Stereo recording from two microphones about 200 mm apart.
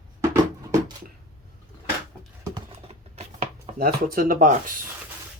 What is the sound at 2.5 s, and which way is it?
Computer keyboard, 30° right (ahead or behind).